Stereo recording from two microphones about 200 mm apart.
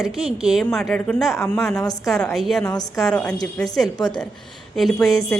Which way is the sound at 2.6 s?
20° left (ahead or behind).